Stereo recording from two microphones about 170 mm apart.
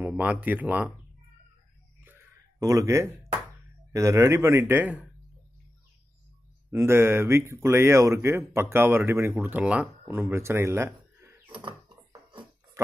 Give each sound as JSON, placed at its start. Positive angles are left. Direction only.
{"t": 0.0, "sound": "speech", "side_deg": -10}
{"t": 2.6, "sound": "speech", "side_deg": -20}
{"t": 6.7, "sound": "speech", "side_deg": -15}
{"t": 11.5, "sound": "a sound", "side_deg": -30}